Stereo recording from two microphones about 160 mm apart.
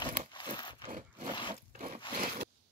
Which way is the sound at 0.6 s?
30° left (ahead or behind).